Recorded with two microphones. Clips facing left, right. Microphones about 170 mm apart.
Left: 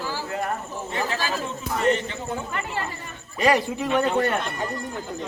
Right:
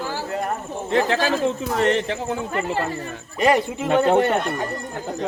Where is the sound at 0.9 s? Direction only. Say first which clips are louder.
Right 8 dB; 75° right (ahead or behind).